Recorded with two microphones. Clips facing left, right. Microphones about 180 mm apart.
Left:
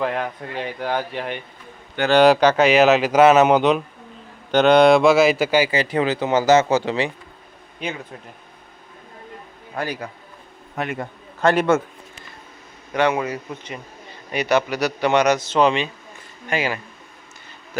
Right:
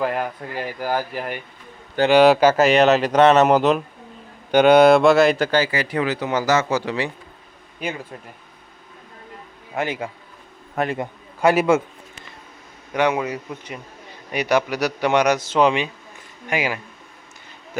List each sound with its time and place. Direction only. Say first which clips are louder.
0.0 s speech: even; 5° right (ahead or behind)
5.7 s speech: left 2 dB; 25° left (ahead or behind)
7.8 s speech: right 1 dB; 5° right (ahead or behind)
9.7 s a man's voice: right 2 dB; 25° right (ahead or behind)
12.9 s a man's voice: even; 15° right (ahead or behind)